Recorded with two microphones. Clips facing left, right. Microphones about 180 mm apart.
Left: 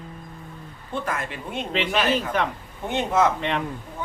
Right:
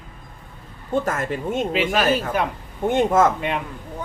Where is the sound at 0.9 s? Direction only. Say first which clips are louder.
Right 6 dB; 45° right (ahead or behind).